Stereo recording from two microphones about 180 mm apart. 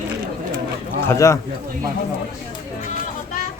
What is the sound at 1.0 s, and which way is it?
Speech, 15° left (ahead or behind).